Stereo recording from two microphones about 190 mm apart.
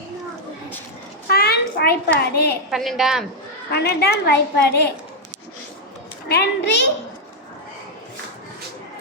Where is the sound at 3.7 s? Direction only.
60° left (ahead or behind).